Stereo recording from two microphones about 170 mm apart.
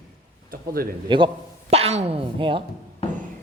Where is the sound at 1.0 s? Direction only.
30° right (ahead or behind).